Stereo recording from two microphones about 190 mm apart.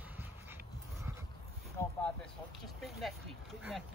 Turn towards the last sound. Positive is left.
turn(degrees=0)  # may be behind; listen again after turning